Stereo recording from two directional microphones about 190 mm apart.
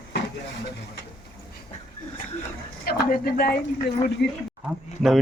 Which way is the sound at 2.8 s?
50° left (ahead or behind).